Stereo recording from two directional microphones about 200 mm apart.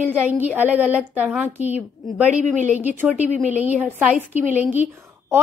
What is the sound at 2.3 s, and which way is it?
Speech, 35° right (ahead or behind).